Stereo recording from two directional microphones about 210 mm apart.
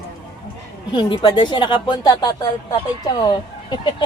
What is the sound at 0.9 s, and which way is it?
Speech, 20° left (ahead or behind).